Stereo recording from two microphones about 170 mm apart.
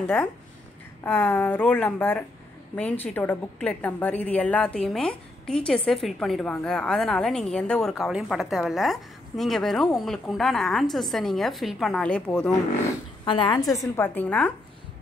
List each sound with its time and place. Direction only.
0.0 s a woman's voice: 5° left (ahead or behind)
13.2 s a woman's voice: 30° left (ahead or behind)
13.9 s speech: 10° left (ahead or behind)